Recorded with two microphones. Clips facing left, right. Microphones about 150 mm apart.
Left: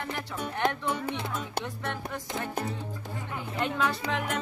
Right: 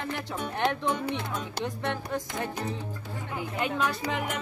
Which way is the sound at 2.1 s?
20° right (ahead or behind).